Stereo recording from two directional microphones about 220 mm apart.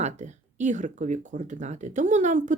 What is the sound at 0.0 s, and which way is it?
Speech, 35° right (ahead or behind).